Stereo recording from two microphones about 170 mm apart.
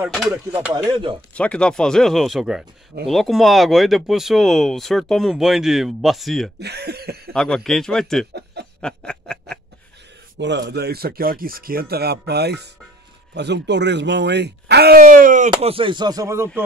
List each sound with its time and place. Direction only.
0.0 s a sound: 5° right (ahead or behind)
0.8 s chopping: 30° right (ahead or behind)
1.3 s speech: 5° left (ahead or behind)
6.6 s speech: 75° right (ahead or behind)
7.3 s speech: 5° left (ahead or behind)
8.3 s a sound: 75° right (ahead or behind)
8.8 s snicker: 5° left (ahead or behind)
10.3 s speech: 90° right; by 12.6 s 75° right (ahead or behind)
13.3 s speech: 90° right; by 15.5 s 50° right (ahead or behind)
15.5 s a sound: 30° right (ahead or behind)